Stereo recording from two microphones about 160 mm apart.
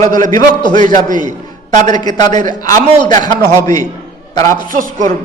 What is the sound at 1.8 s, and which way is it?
A man's voice, 25° left (ahead or behind).